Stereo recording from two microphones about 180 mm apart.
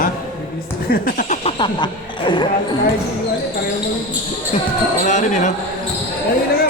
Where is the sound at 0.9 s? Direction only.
50° left (ahead or behind).